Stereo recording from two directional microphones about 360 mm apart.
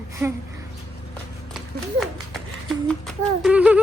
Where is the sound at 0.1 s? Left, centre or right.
Centre.